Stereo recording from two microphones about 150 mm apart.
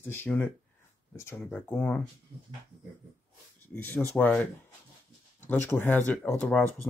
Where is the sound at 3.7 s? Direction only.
15° left (ahead or behind).